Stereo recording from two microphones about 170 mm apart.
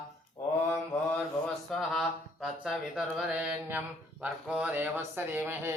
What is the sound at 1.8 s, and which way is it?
Mantra, centre (ahead or behind).